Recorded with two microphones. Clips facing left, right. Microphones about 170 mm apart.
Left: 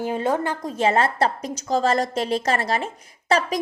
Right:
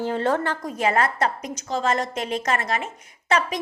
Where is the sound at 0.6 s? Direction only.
30° left (ahead or behind).